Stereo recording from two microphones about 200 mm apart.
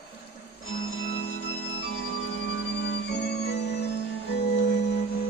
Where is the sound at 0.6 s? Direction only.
90° left; by 3.9 s 55° left (ahead or behind).